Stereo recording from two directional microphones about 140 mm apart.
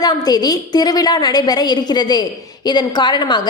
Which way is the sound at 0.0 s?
30° left (ahead or behind).